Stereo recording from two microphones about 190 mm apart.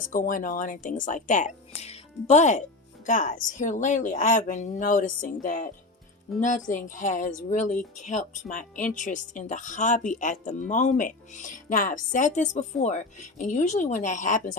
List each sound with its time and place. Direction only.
0.0 s speech: 45° left (ahead or behind)